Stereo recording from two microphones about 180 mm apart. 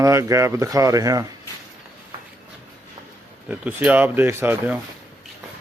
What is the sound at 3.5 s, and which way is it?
Speech, 10° right (ahead or behind).